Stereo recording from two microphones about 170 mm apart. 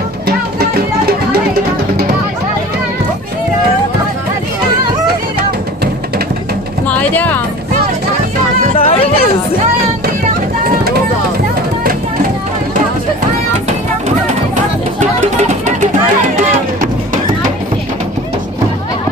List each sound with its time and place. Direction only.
0.6 s music: 65° right (ahead or behind)
6.9 s music: 10° left (ahead or behind)
8.7 s a sound: 35° left (ahead or behind)
15.0 s music: 45° right (ahead or behind)